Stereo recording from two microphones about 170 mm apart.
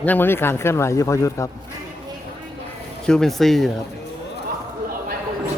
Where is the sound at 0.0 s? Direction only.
10° left (ahead or behind).